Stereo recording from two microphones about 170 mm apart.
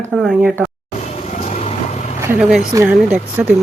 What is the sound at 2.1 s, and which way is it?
Vehicle, 15° right (ahead or behind).